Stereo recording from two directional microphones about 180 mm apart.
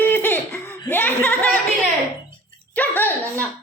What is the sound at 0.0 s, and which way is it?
Laughter, 10° left (ahead or behind).